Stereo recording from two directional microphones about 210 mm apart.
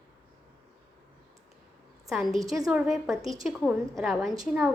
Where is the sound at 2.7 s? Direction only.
5° right (ahead or behind).